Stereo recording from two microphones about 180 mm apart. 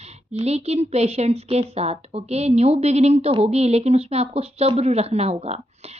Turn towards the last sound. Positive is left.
turn(degrees=-35)  # may be behind; listen again after turning